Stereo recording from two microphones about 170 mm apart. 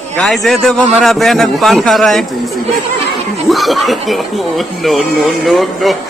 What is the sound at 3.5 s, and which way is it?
Speech, centre (ahead or behind).